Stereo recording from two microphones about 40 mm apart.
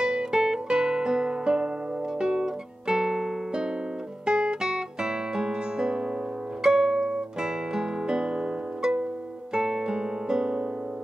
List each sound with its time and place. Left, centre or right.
0.0 s music: centre
4.3 s guitar: right
6.6 s music: centre
9.5 s music: centre